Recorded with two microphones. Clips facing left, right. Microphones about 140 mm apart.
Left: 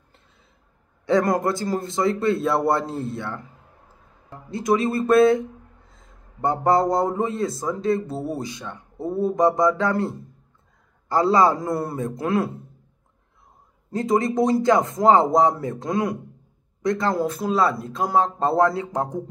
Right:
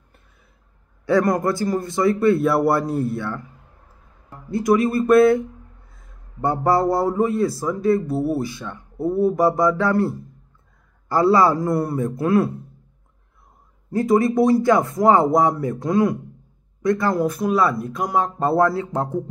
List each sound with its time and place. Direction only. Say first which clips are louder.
1.0 s speech: right 2 dB; 25° left (ahead or behind)
4.5 s speech: right 3 dB; 20° left (ahead or behind)
13.9 s speech: right 4 dB; 20° left (ahead or behind)